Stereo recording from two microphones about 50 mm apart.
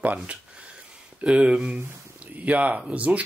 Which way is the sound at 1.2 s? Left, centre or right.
Right.